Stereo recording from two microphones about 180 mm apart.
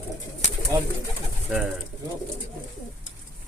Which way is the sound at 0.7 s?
15° right (ahead or behind).